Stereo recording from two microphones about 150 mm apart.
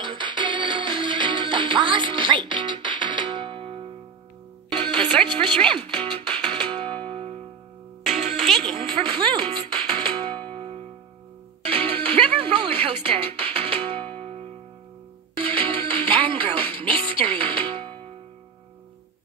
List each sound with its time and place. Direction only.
0.0 s music: 30° right (ahead or behind)
4.8 s music: 10° left (ahead or behind)
5.2 s a sound: 30° right (ahead or behind)
5.7 s music: 30° right (ahead or behind)
8.0 s music: centre (ahead or behind)
9.2 s music: 35° right (ahead or behind)
10.3 s music: 10° left (ahead or behind)
11.6 s music: 35° right (ahead or behind)
14.0 s music: 10° left (ahead or behind)
15.3 s music: 35° right (ahead or behind)